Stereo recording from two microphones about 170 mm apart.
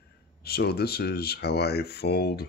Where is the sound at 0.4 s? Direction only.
70° left (ahead or behind).